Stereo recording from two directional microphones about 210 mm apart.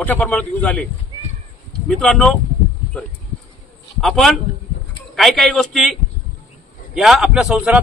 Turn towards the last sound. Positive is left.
turn(degrees=-5)  # may be behind; listen again after turning